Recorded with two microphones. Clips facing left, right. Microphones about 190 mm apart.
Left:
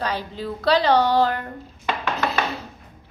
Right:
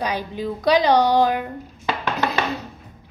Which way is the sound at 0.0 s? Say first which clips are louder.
Right 2 dB; 15° right (ahead or behind).